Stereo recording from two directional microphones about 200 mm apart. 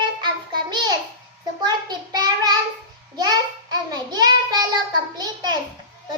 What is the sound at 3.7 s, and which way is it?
Child singing, 20° right (ahead or behind).